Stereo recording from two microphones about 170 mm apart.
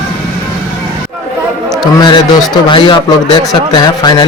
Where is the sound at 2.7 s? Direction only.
30° left (ahead or behind).